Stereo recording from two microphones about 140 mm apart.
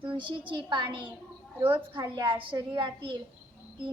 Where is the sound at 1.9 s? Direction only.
30° right (ahead or behind).